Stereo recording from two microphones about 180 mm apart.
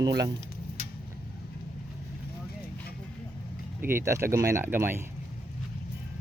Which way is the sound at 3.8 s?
15° right (ahead or behind).